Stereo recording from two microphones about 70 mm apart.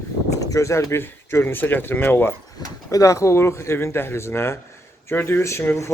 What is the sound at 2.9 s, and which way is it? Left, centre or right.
Speech, left.